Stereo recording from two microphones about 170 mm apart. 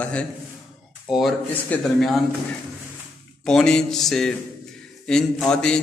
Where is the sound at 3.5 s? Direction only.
5° left (ahead or behind).